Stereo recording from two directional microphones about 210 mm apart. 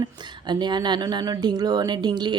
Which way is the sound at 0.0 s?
20° right (ahead or behind).